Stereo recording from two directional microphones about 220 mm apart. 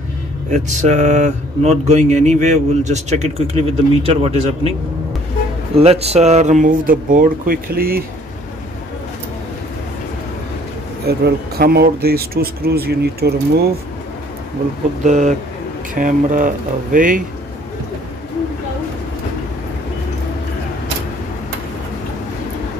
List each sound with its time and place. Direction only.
0.5 s speech: 30° right (ahead or behind)
5.8 s speech: 30° right (ahead or behind); by 8.0 s 45° right (ahead or behind)
11.1 s speech: 45° right (ahead or behind)
15.0 s speech: 30° right (ahead or behind)